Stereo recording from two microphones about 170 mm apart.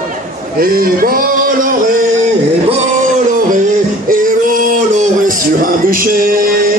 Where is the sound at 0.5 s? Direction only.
60° right (ahead or behind).